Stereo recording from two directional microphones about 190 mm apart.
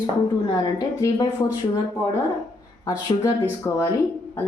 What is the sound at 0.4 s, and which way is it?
A woman's voice, 20° left (ahead or behind).